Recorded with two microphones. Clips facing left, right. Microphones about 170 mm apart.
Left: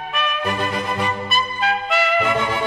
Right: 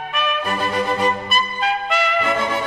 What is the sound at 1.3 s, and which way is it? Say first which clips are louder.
Music: even; centre (ahead or behind).